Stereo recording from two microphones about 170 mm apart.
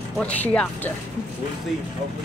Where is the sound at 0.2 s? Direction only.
10° left (ahead or behind).